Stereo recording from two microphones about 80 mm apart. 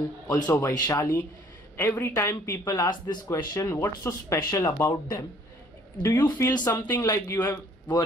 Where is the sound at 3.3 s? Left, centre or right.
Left.